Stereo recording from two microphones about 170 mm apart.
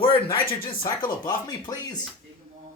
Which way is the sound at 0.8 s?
25° left (ahead or behind).